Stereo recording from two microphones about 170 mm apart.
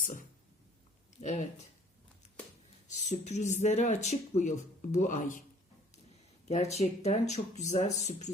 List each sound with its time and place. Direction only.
0.0 s a sound: 50° left (ahead or behind)
1.2 s speech: 45° left (ahead or behind)
3.1 s speech: 45° left (ahead or behind)
6.5 s speech: 40° left (ahead or behind)